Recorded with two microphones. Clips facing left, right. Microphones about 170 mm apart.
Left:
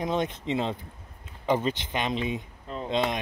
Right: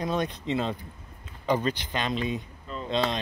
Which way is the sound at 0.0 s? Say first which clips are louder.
Left 1 dB; 20° left (ahead or behind).